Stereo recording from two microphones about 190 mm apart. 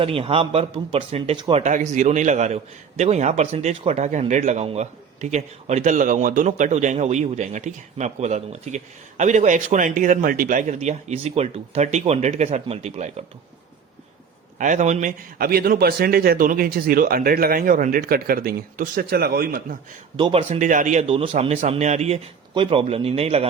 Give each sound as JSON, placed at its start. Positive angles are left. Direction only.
{"t": 0.0, "sound": "speech", "side_deg": -30}
{"t": 14.6, "sound": "a man's voice", "side_deg": -40}
{"t": 20.1, "sound": "speech", "side_deg": -30}